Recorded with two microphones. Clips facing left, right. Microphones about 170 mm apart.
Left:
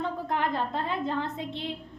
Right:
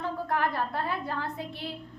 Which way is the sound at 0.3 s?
20° left (ahead or behind).